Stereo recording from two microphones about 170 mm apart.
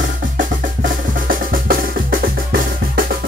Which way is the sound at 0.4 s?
55° right (ahead or behind).